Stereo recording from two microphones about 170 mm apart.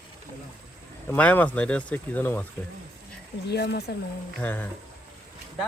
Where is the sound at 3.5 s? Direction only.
85° left.